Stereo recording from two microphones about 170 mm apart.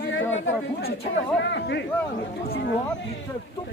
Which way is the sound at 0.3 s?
75° left (ahead or behind).